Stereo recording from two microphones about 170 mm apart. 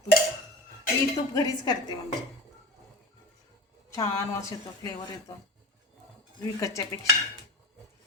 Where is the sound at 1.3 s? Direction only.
20° left (ahead or behind).